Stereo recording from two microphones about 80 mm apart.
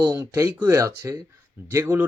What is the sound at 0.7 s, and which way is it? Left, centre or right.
Speech, right.